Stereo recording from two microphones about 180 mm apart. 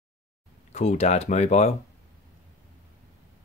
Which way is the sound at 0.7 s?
40° left (ahead or behind).